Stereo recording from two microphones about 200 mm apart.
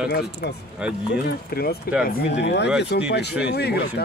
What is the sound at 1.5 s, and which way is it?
Speech, 50° left (ahead or behind).